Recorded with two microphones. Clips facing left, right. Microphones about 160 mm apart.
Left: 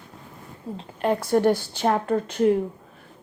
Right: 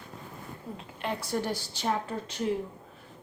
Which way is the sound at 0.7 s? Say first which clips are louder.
Left 8 dB; 30° left (ahead or behind).